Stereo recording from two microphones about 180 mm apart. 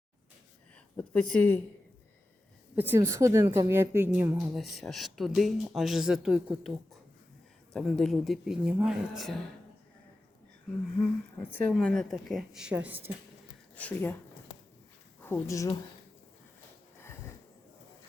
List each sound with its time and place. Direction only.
0.9 s speech: 5° left (ahead or behind)
2.7 s a woman's voice: 10° right (ahead or behind)
4.5 s speech: centre (ahead or behind)
11.5 s speech: 5° left (ahead or behind); by 13.1 s 10° right (ahead or behind)
13.7 s speech: 10° left (ahead or behind)
15.2 s speech: 15° left (ahead or behind)